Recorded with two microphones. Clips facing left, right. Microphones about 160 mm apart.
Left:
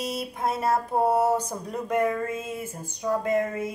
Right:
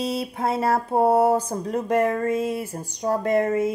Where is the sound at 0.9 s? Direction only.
25° right (ahead or behind).